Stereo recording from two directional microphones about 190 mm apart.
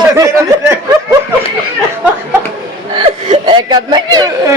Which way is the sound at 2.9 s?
30° right (ahead or behind).